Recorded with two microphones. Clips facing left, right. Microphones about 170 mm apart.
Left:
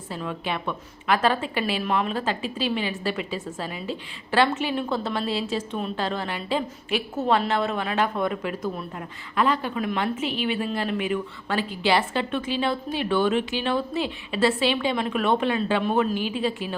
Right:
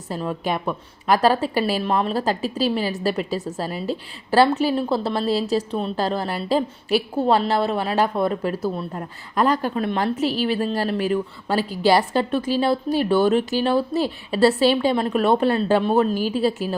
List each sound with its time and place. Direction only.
0.1 s a woman's voice: 40° right (ahead or behind)